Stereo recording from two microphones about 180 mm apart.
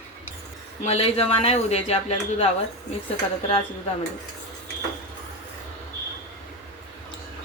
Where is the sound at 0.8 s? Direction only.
35° left (ahead or behind).